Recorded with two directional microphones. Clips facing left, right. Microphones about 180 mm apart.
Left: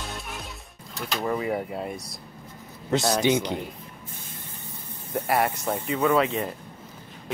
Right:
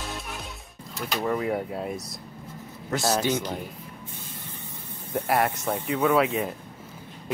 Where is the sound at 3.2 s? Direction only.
15° left (ahead or behind).